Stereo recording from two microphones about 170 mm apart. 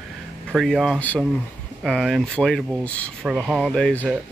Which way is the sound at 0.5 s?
Centre (ahead or behind).